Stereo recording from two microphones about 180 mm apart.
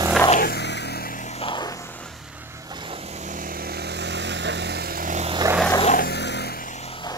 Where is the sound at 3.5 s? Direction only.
60° right (ahead or behind).